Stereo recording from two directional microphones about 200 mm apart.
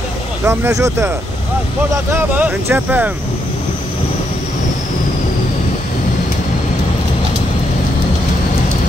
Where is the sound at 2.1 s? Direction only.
10° right (ahead or behind).